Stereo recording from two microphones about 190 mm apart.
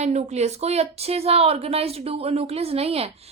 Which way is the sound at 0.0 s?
35° right (ahead or behind).